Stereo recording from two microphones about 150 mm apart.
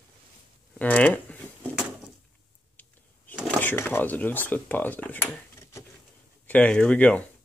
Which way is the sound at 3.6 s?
15° left (ahead or behind).